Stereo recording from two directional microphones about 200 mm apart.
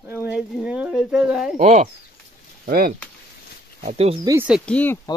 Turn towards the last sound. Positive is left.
turn(degrees=10)  # may be behind; listen again after turning